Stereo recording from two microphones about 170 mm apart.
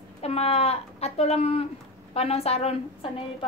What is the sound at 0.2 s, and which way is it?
A woman's voice, 35° left (ahead or behind).